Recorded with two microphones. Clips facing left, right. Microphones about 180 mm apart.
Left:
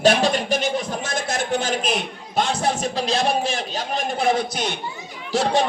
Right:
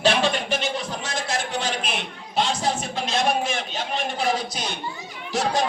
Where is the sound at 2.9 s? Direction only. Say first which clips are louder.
Left 2 dB; 35° left (ahead or behind); by 4.6 s 55° left (ahead or behind).